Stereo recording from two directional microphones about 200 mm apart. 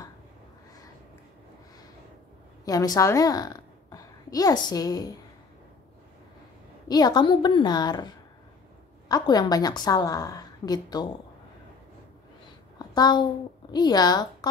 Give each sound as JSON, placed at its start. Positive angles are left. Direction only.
{"t": 2.6, "sound": "a woman's voice", "side_deg": 20}
{"t": 6.9, "sound": "a woman's voice", "side_deg": 20}
{"t": 9.1, "sound": "a woman's voice", "side_deg": 20}
{"t": 12.7, "sound": "a sound", "side_deg": 20}
{"t": 13.7, "sound": "a woman's voice", "side_deg": 20}